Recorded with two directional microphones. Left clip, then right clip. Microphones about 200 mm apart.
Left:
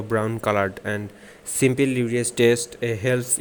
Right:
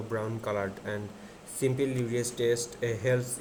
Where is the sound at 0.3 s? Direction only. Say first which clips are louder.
Left 10 dB; 50° left (ahead or behind).